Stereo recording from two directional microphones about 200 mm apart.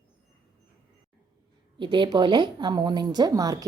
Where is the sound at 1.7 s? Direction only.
25° right (ahead or behind).